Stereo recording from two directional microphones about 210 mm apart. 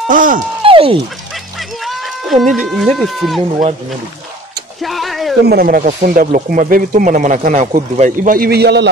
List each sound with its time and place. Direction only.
0.1 s speech: 40° right (ahead or behind)
0.7 s fowl: 25° right (ahead or behind)
1.9 s a sound: centre (ahead or behind)
2.5 s speech: centre (ahead or behind)
4.8 s a sound: centre (ahead or behind)
5.5 s speech: 45° right (ahead or behind)